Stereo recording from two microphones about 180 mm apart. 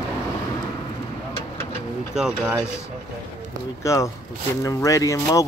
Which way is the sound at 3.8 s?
15° left (ahead or behind).